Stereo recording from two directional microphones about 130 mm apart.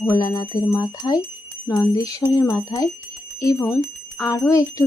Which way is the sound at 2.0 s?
25° left (ahead or behind).